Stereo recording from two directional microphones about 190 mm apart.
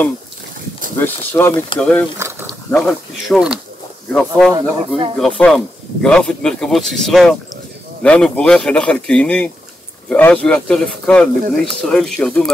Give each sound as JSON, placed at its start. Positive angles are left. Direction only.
{"t": 0.9, "sound": "speech", "side_deg": 10}
{"t": 2.1, "sound": "a sound", "side_deg": -15}
{"t": 2.7, "sound": "speech", "side_deg": 0}
{"t": 4.6, "sound": "speech", "side_deg": -25}
{"t": 5.2, "sound": "speech", "side_deg": 0}